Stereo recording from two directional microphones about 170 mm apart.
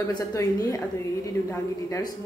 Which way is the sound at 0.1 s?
20° left (ahead or behind).